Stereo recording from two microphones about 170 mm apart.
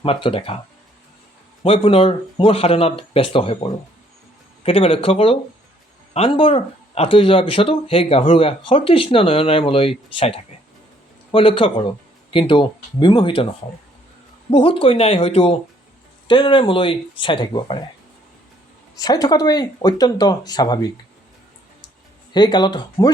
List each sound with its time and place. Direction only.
0.0 s speech: 30° left (ahead or behind)
1.6 s speech: 35° left (ahead or behind)
14.5 s speech: 30° left (ahead or behind)
18.9 s speech: 25° left (ahead or behind)
22.3 s speech: 25° left (ahead or behind)